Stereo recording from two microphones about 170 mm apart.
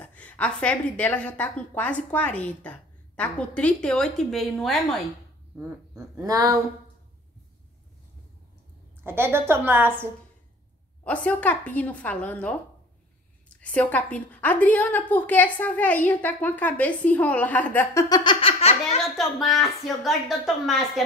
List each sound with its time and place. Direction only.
0.0 s a woman's voice: 10° left (ahead or behind)
5.6 s speech: 15° right (ahead or behind)
9.0 s a woman's voice: 15° right (ahead or behind)
11.1 s a woman's voice: 10° left (ahead or behind)
18.1 s laughter: 30° left (ahead or behind)
18.9 s a woman's voice: centre (ahead or behind)